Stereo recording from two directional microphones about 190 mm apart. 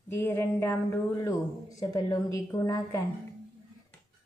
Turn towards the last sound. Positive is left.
turn(degrees=15)  # may be behind; listen again after turning